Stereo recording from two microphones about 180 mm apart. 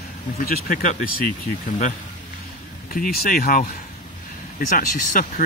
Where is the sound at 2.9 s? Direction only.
55° left (ahead or behind).